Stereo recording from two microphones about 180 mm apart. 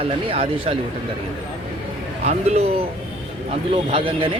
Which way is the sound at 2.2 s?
35° right (ahead or behind).